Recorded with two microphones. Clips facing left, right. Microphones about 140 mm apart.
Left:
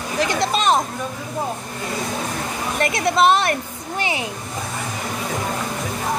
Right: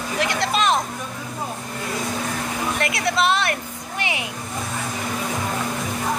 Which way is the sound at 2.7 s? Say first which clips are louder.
Left 6 dB; 40° left (ahead or behind).